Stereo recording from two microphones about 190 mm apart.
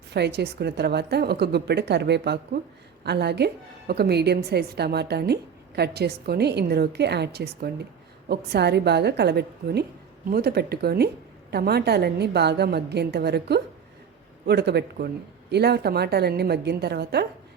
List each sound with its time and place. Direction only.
0.1 s a woman's voice: 60° right (ahead or behind)